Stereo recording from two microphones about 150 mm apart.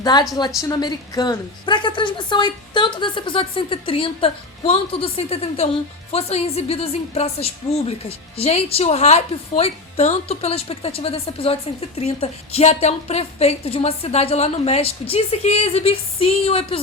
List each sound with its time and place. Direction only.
0.0 s a woman's voice: 30° left (ahead or behind)